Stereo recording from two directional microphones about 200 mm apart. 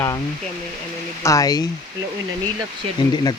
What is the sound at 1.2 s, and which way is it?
Speech, 15° left (ahead or behind).